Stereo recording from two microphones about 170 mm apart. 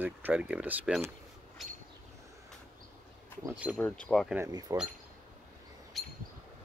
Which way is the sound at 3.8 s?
5° left (ahead or behind).